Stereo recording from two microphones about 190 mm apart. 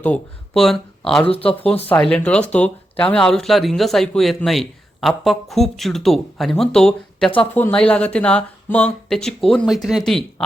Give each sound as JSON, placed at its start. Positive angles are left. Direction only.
{"t": 0.0, "sound": "speech", "side_deg": 5}
{"t": 1.3, "sound": "speech", "side_deg": 30}
{"t": 1.9, "sound": "speech", "side_deg": 5}